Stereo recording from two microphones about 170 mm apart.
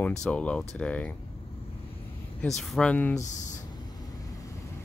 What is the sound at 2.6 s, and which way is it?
Speech, 5° left (ahead or behind).